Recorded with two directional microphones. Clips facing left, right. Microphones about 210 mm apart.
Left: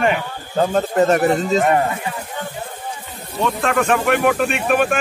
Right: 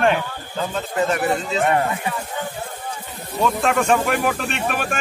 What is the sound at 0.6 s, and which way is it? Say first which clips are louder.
Speech: left 7 dB; 45° left (ahead or behind).